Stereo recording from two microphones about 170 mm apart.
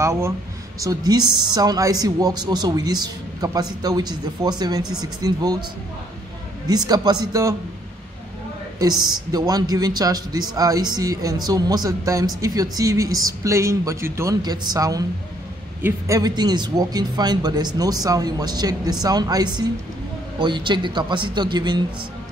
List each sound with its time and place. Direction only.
0.0 s speech: 15° right (ahead or behind)
6.7 s speech: 25° right (ahead or behind)
8.7 s speech: 25° right (ahead or behind)